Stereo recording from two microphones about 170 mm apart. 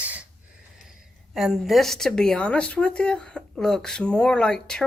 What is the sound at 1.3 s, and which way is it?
Speech, centre (ahead or behind).